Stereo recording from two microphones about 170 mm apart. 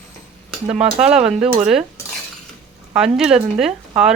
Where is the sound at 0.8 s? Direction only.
5° right (ahead or behind).